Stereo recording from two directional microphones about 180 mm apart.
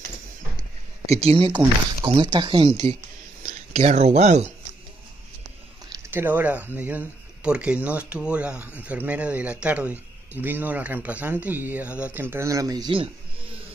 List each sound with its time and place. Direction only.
1.0 s speech: 35° right (ahead or behind)
3.4 s speech: 40° right (ahead or behind)
6.0 s speech: 10° right (ahead or behind)